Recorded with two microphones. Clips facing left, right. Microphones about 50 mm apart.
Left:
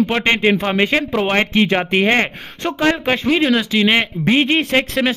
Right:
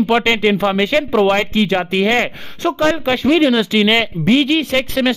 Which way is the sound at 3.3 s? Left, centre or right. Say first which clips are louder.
Right 4 dB; centre.